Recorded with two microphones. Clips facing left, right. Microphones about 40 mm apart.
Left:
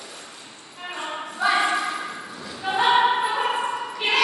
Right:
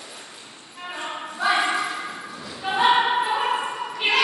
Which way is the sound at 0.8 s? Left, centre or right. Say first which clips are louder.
Even; centre.